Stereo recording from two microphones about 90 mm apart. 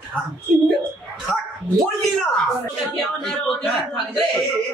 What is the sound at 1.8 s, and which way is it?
Speech, centre (ahead or behind).